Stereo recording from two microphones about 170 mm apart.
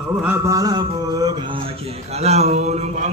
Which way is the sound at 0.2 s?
15° right (ahead or behind).